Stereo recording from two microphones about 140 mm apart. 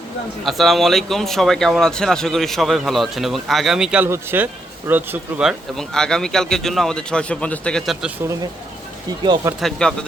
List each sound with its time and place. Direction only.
0.4 s speech: centre (ahead or behind)
5.5 s speech: 5° left (ahead or behind)
9.2 s speech: 30° right (ahead or behind)
9.6 s speech: 5° left (ahead or behind)